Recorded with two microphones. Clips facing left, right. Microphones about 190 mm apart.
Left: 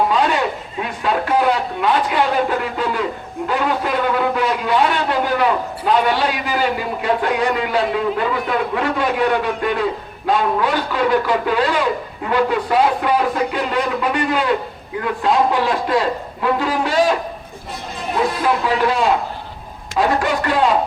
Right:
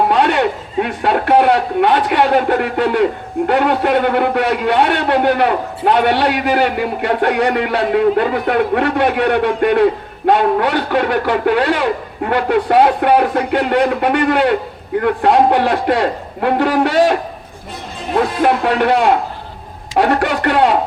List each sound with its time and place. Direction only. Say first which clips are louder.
0.1 s speech: right 4 dB; 65° right (ahead or behind)
18.4 s speech: right 5 dB; 65° right (ahead or behind)